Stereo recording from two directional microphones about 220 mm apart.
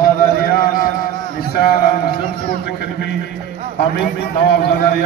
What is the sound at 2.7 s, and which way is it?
A man's voice, 45° left (ahead or behind).